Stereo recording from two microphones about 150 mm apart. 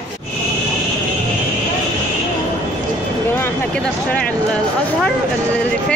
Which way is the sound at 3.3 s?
15° left (ahead or behind).